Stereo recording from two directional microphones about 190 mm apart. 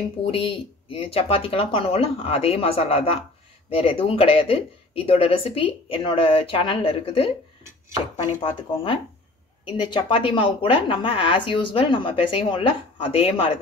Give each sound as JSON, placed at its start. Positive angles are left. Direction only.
{"t": 0.3, "sound": "a woman's voice", "side_deg": 30}
{"t": 8.4, "sound": "a woman's voice", "side_deg": 25}